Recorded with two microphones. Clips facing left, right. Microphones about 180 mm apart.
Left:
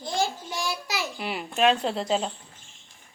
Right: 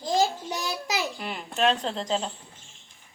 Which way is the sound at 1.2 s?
10° left (ahead or behind).